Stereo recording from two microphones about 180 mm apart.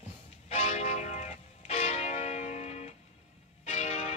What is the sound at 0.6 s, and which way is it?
Music, 35° left (ahead or behind).